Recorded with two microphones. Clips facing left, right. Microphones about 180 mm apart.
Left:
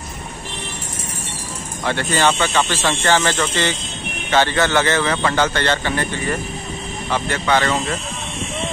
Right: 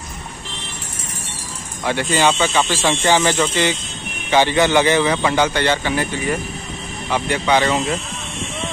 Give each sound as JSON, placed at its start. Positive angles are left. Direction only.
{"t": 1.9, "sound": "speech", "side_deg": -15}